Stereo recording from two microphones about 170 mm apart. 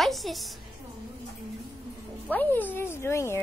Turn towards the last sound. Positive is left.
turn(degrees=15)  # may be behind; listen again after turning